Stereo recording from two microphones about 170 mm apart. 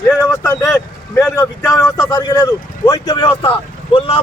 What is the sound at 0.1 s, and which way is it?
Speech, 15° left (ahead or behind).